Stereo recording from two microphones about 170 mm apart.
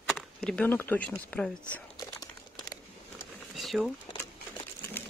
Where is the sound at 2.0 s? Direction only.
20° left (ahead or behind).